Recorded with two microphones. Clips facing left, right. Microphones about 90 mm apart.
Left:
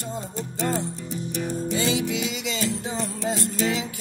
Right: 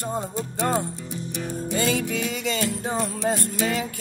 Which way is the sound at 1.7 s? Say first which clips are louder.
Right 2 dB; 50° right (ahead or behind).